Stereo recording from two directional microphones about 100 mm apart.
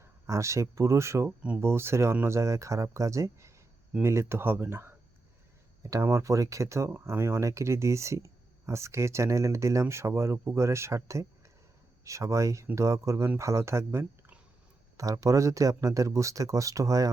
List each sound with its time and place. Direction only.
0.0 s speech: 30° right (ahead or behind)
14.9 s speech: 35° right (ahead or behind)